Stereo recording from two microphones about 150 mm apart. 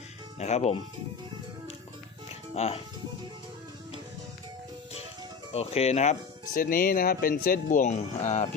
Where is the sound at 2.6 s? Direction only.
45° left (ahead or behind).